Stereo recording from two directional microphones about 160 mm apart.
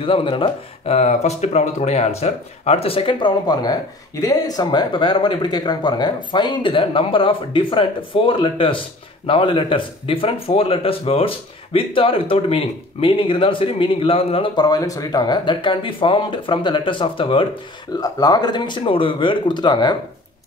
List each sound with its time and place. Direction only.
0.0 s speech: 35° left (ahead or behind)